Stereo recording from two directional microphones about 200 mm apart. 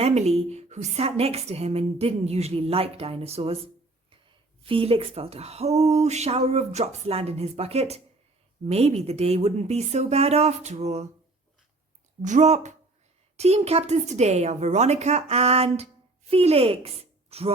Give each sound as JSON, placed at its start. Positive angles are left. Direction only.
{"t": 0.0, "sound": "a woman's voice", "side_deg": -35}
{"t": 12.2, "sound": "a woman's voice", "side_deg": -35}